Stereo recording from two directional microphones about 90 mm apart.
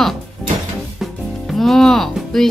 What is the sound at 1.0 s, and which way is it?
Music, centre (ahead or behind).